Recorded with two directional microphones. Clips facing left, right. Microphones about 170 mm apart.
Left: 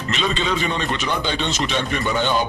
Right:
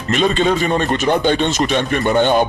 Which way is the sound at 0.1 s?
50° right (ahead or behind).